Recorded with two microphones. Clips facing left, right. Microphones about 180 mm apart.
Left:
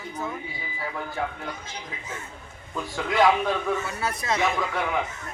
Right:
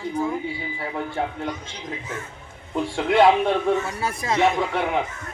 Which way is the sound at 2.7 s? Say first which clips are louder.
Right 5 dB; 30° right (ahead or behind).